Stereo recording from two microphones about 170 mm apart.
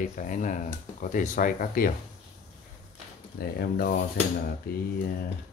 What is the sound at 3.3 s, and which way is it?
Speech, 65° left (ahead or behind).